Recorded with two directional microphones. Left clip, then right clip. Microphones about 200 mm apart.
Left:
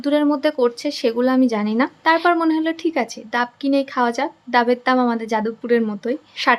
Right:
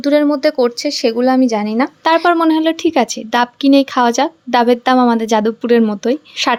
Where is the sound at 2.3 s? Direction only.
35° right (ahead or behind).